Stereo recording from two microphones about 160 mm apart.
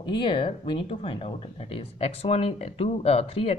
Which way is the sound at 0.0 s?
30° left (ahead or behind).